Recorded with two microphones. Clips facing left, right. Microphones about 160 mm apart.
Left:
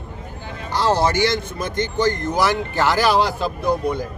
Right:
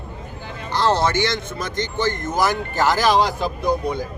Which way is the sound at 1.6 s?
50° left (ahead or behind).